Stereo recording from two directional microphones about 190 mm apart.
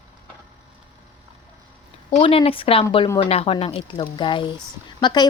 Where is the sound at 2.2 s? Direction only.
30° left (ahead or behind).